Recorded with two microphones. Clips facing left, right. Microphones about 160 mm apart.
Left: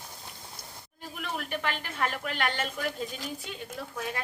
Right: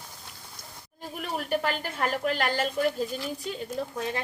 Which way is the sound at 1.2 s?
35° right (ahead or behind).